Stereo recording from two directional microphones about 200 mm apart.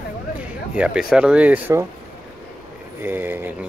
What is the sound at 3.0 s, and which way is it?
Speech, 10° right (ahead or behind).